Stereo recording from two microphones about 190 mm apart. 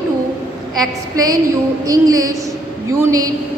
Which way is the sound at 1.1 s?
20° right (ahead or behind).